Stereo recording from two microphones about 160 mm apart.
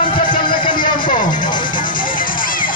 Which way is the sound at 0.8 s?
55° left (ahead or behind).